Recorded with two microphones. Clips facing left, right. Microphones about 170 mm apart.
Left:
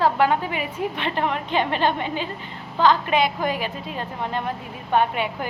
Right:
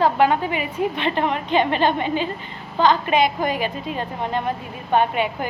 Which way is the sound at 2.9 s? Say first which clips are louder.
Right 2 dB; 5° left (ahead or behind).